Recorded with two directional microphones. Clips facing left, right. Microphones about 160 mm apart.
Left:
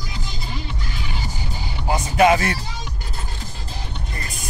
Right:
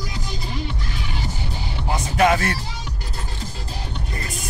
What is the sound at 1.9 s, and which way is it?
Speech, 15° left (ahead or behind).